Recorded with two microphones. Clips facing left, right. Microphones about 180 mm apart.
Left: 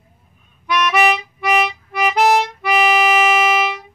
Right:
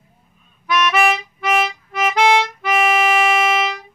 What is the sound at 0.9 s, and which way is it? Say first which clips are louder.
Harmonica: left 1 dB; centre (ahead or behind).